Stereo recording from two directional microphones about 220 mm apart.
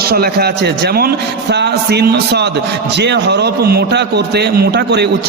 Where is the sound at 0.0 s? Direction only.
45° right (ahead or behind).